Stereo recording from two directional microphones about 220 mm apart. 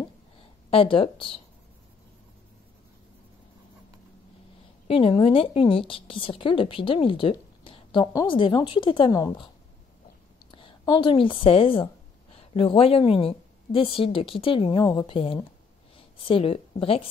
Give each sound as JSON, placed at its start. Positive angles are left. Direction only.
{"t": 0.7, "sound": "a woman's voice", "side_deg": 25}
{"t": 4.8, "sound": "a woman's voice", "side_deg": 25}
{"t": 10.5, "sound": "a woman's voice", "side_deg": 25}